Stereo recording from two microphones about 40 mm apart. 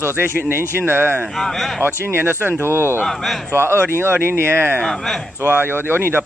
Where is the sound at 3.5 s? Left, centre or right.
Right.